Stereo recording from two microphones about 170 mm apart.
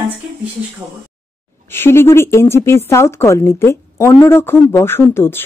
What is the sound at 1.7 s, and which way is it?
Speech, 15° left (ahead or behind).